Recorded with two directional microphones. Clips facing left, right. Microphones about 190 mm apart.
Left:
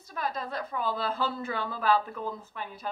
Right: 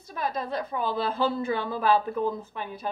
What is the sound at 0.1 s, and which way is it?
A woman's voice, 15° right (ahead or behind).